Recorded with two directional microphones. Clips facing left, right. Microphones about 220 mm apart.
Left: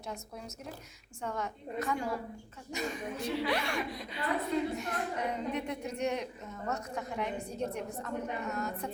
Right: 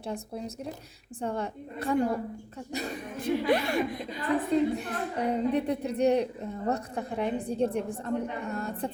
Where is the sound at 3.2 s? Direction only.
50° right (ahead or behind).